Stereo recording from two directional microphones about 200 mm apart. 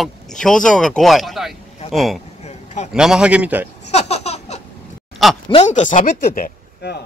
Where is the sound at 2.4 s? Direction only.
35° left (ahead or behind).